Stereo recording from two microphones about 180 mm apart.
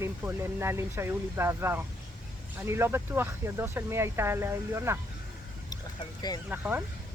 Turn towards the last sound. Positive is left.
turn(degrees=-10)  # may be behind; listen again after turning